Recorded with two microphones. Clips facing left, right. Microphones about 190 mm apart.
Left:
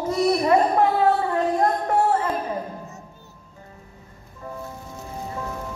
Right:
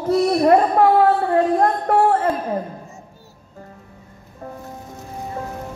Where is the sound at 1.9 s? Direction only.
60° right (ahead or behind).